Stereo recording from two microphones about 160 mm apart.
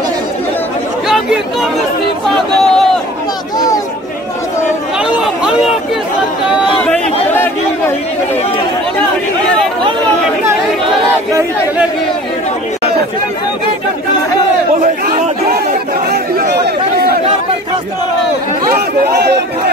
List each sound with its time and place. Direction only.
1.0 s speech: 5° right (ahead or behind)
3.5 s chatter: 25° left (ahead or behind)
14.8 s chatter: 55° right (ahead or behind)
16.1 s chatter: 85° right
18.7 s a sound: 90° right